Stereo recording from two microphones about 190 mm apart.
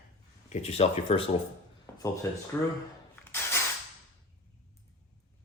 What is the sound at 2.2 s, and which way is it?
Speech, 15° left (ahead or behind).